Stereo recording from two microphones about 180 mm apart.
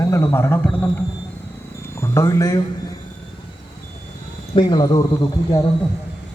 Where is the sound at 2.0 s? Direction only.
15° left (ahead or behind).